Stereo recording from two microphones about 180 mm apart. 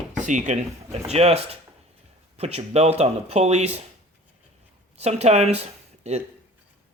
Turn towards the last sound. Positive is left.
turn(degrees=-35)  # may be behind; listen again after turning